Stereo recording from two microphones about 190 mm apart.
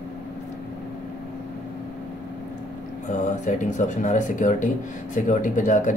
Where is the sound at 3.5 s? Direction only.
40° left (ahead or behind).